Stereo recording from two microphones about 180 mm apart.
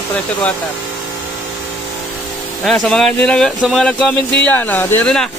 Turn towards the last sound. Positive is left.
turn(degrees=5)  # may be behind; listen again after turning